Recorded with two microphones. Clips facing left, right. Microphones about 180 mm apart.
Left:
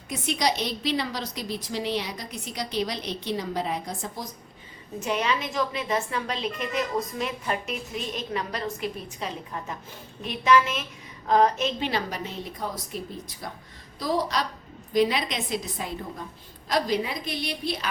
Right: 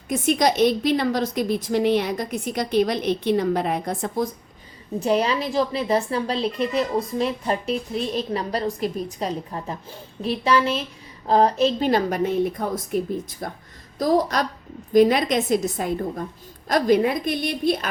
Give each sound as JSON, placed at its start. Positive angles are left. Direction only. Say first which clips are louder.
{"t": 0.1, "sound": "a woman's voice", "louder": "right 7 dB", "side_deg": -50}
{"t": 4.9, "sound": "a woman's voice", "louder": "right 6 dB", "side_deg": -35}